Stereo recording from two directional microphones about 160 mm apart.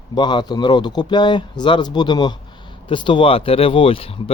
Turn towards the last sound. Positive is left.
turn(degrees=35)  # may be behind; listen again after turning